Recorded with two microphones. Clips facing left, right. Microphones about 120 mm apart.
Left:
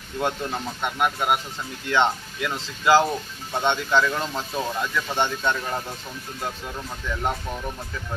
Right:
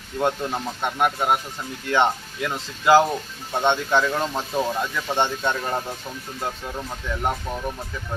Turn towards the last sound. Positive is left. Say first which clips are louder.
# right 1 dB
turn(degrees=-10)  # may be behind; listen again after turning